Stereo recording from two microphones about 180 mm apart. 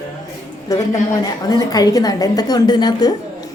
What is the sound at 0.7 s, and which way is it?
A woman's voice, 20° left (ahead or behind).